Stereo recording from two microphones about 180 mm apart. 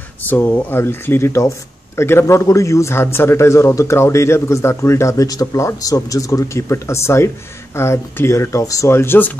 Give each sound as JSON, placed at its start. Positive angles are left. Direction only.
{"t": 0.2, "sound": "a man's voice", "side_deg": 10}